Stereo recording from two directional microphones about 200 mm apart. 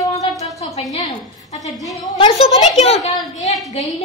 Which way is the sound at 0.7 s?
30° left (ahead or behind).